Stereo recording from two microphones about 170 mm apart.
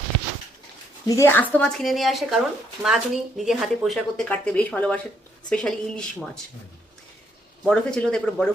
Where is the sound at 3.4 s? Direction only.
Centre (ahead or behind).